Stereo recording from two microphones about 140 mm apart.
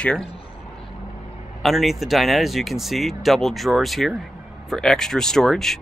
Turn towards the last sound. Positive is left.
turn(degrees=5)  # may be behind; listen again after turning